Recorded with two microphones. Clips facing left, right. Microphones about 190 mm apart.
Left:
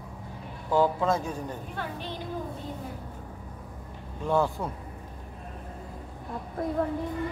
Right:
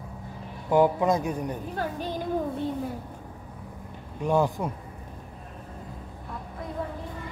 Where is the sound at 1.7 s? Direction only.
40° right (ahead or behind).